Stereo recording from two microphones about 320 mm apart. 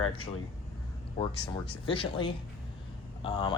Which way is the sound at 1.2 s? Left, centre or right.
Centre.